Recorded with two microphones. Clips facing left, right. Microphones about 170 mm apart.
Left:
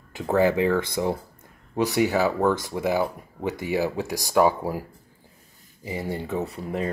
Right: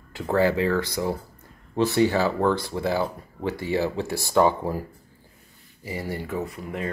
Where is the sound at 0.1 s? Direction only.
15° left (ahead or behind).